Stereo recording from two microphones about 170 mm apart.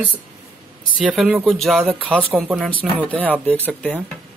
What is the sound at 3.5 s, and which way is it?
Speech, 10° left (ahead or behind).